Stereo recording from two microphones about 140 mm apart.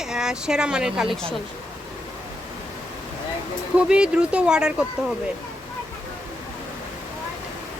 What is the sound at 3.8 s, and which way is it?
Speech, 5° right (ahead or behind).